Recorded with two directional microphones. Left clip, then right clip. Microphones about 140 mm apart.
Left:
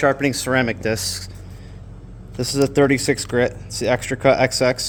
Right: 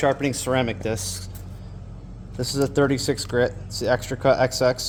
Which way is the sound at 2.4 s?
70° left (ahead or behind).